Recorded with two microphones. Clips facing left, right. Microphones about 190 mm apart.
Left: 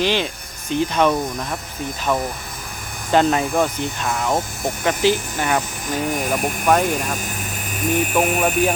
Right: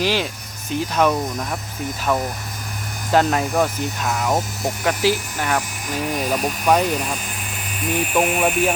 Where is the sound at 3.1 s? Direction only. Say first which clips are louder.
Left 1 dB; centre (ahead or behind).